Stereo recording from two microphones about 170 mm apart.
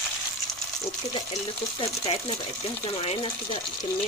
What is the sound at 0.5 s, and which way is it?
Frying, centre (ahead or behind).